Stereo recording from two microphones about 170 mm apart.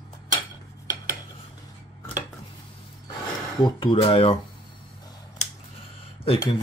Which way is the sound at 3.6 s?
30° left (ahead or behind).